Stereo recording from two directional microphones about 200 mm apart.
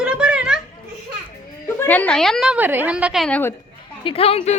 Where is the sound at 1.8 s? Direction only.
10° left (ahead or behind).